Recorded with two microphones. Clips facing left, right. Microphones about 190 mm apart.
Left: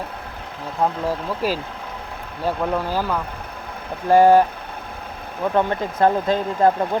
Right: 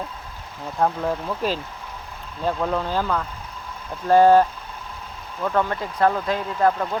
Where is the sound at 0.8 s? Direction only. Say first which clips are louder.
Even; 10° left (ahead or behind).